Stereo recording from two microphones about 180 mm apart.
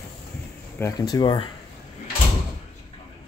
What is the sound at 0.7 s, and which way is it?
Speech, 15° left (ahead or behind).